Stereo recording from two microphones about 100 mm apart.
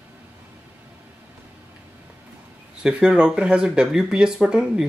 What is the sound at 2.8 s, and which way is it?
Speech, 10° right (ahead or behind).